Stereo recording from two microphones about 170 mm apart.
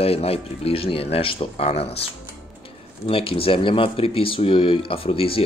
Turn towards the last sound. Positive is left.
turn(degrees=35)  # may be behind; listen again after turning